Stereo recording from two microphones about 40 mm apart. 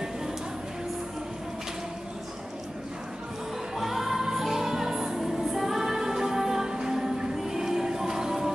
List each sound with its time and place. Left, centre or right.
3.7 s music: centre